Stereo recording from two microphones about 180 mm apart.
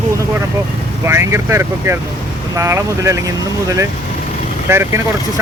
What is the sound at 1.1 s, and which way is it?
Speech, 15° right (ahead or behind).